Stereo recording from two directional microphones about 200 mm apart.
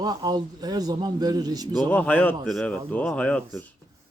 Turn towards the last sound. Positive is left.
turn(degrees=5)  # may be behind; listen again after turning